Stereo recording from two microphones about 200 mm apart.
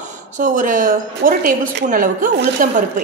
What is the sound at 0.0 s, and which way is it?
A woman's voice, 40° right (ahead or behind).